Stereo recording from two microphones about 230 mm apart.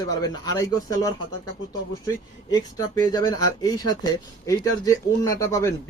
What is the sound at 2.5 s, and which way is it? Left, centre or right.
Speech, centre.